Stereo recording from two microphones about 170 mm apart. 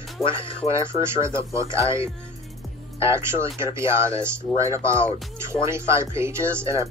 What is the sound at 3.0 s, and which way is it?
Speech, 15° right (ahead or behind).